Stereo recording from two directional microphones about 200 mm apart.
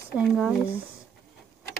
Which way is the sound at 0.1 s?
Centre (ahead or behind).